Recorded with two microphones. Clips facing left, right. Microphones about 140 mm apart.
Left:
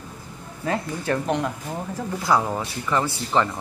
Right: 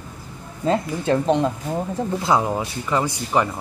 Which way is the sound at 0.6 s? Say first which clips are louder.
Right 5 dB; 25° right (ahead or behind).